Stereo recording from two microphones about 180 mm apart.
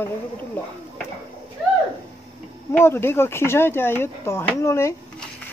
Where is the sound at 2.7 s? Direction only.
15° left (ahead or behind).